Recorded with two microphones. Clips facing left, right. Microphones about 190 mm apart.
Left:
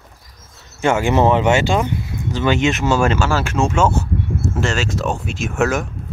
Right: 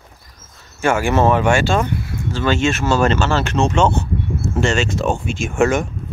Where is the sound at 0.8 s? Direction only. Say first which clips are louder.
Left 1 dB; 20° left (ahead or behind).